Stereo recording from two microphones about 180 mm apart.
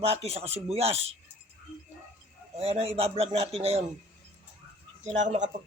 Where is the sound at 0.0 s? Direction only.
35° right (ahead or behind).